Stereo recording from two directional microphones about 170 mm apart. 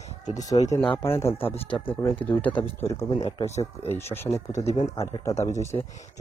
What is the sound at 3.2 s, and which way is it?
Speech, 35° left (ahead or behind).